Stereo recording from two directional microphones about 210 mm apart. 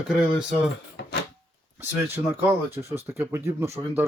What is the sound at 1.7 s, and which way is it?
Speech, 10° right (ahead or behind).